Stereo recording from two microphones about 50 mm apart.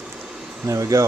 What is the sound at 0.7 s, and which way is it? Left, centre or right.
Speech, right.